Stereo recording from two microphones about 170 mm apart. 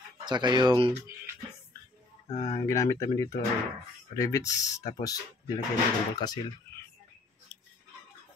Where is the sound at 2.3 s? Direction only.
35° left (ahead or behind).